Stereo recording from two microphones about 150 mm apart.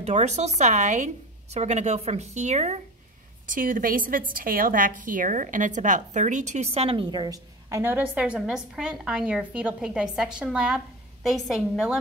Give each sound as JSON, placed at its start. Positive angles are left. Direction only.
{"t": 0.0, "sound": "a woman's voice", "side_deg": -50}
{"t": 3.4, "sound": "a woman's voice", "side_deg": -65}
{"t": 8.1, "sound": "a woman's voice", "side_deg": -5}